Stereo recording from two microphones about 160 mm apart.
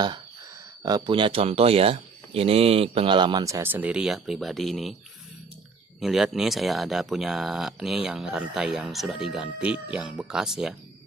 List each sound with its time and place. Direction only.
0.8 s speech: 25° right (ahead or behind); by 4.9 s centre (ahead or behind)
5.9 s speech: centre (ahead or behind)